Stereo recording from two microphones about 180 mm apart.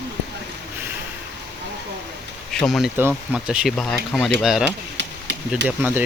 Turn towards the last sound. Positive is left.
turn(degrees=-10)  # may be behind; listen again after turning